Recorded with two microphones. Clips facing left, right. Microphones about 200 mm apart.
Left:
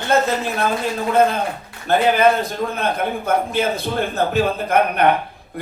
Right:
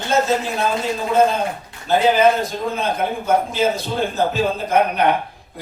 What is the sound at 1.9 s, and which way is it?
A man's voice, 60° left (ahead or behind).